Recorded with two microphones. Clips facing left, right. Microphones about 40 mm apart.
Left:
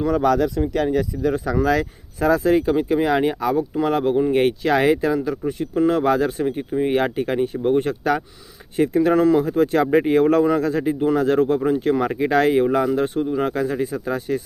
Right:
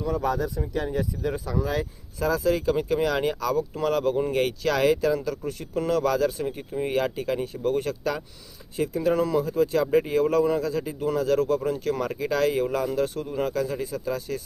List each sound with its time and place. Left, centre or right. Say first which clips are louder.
0.0 s speech: left 8 dB; left
2.1 s speech: left 6 dB; left
2.6 s speech: left 5 dB; left